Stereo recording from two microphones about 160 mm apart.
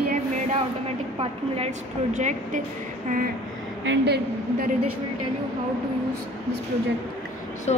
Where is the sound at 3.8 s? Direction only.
90° right.